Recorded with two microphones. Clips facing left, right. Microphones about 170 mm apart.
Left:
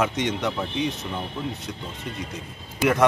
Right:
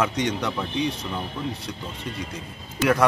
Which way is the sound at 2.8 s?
15° left (ahead or behind).